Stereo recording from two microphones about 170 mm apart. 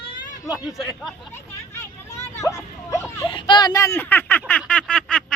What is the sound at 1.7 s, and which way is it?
Vehicle, 15° left (ahead or behind).